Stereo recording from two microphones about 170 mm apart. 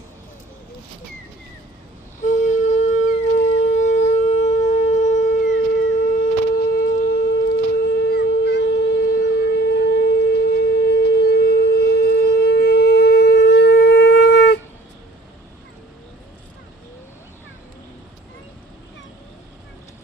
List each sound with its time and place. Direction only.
2.2 s shofar: 50° left (ahead or behind)
8.1 s shofar: 75° left (ahead or behind)